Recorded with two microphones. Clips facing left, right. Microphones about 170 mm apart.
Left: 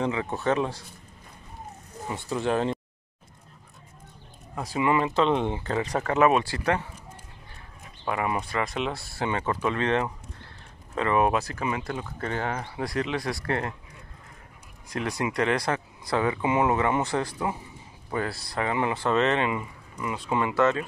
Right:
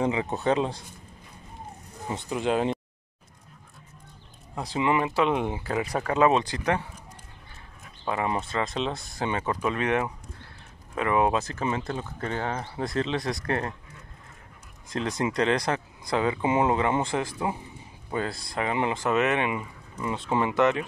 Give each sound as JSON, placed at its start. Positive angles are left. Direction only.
{"t": 0.0, "sound": "speech", "side_deg": -20}
{"t": 2.0, "sound": "speech", "side_deg": -20}
{"t": 4.6, "sound": "speech", "side_deg": -20}
{"t": 8.1, "sound": "speech", "side_deg": -25}
{"t": 12.2, "sound": "speech", "side_deg": -15}
{"t": 14.9, "sound": "speech", "side_deg": -20}
{"t": 20.0, "sound": "speech", "side_deg": -30}